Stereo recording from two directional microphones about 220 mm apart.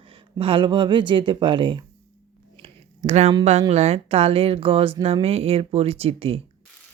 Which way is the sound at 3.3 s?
30° right (ahead or behind).